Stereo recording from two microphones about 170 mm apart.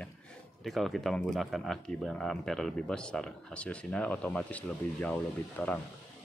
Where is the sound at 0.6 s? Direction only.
Centre (ahead or behind).